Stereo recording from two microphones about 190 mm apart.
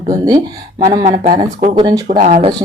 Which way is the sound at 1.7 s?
25° right (ahead or behind).